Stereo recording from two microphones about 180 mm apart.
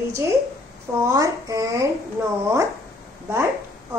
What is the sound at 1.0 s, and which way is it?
Speech, 20° right (ahead or behind).